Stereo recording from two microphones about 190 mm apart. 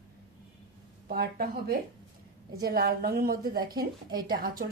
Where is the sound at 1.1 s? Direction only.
50° right (ahead or behind).